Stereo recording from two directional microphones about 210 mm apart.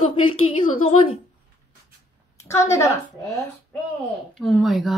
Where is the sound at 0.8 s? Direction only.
30° left (ahead or behind).